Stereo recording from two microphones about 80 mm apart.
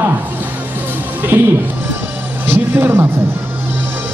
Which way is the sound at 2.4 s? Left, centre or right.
Right.